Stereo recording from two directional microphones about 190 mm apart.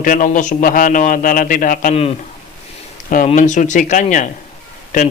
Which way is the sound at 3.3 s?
40° left (ahead or behind).